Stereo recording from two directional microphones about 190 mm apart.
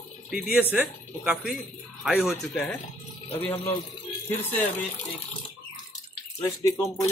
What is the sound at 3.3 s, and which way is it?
Speech, 15° left (ahead or behind).